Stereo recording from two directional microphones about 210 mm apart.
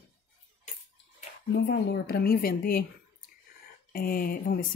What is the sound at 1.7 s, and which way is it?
Speech, 45° left (ahead or behind).